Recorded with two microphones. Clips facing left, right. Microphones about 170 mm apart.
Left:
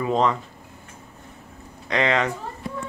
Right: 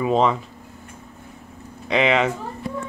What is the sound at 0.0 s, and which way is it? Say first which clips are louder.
Speech: right 3 dB; 15° right (ahead or behind).